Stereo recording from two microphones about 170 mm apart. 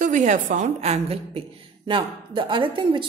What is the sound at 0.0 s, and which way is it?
A woman's voice, 45° right (ahead or behind).